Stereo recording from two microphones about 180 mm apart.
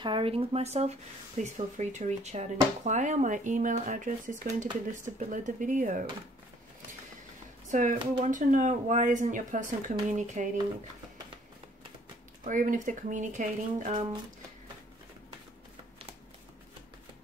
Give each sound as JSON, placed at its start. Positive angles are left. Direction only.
{"t": 0.0, "sound": "speech", "side_deg": -30}
{"t": 7.7, "sound": "speech", "side_deg": -45}
{"t": 8.0, "sound": "speech", "side_deg": -25}
{"t": 8.3, "sound": "speech", "side_deg": -45}
{"t": 12.4, "sound": "speech", "side_deg": -45}